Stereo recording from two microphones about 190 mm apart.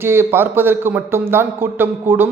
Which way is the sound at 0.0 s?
10° right (ahead or behind).